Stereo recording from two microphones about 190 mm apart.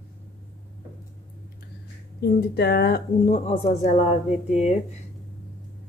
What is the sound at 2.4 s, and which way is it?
Speech, 60° left (ahead or behind).